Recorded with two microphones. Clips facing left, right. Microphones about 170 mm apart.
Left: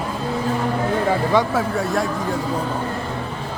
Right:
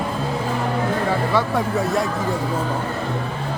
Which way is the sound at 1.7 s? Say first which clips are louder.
Right 1 dB; centre (ahead or behind).